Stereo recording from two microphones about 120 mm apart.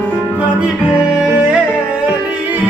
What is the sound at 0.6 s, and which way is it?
Music, 10° right (ahead or behind).